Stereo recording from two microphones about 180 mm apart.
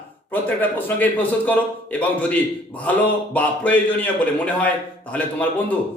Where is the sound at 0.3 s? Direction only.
10° left (ahead or behind).